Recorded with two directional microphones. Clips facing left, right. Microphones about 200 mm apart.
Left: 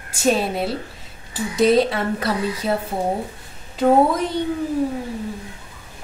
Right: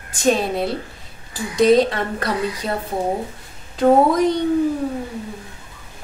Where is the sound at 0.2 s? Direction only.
5° left (ahead or behind).